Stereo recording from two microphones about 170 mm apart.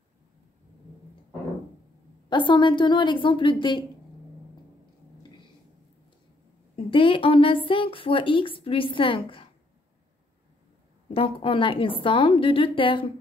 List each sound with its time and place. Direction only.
2.2 s a woman's voice: 25° left (ahead or behind)
6.9 s speech: 30° left (ahead or behind)
11.1 s speech: 30° left (ahead or behind)